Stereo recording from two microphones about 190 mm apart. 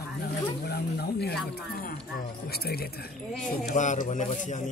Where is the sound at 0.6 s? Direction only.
55° left (ahead or behind).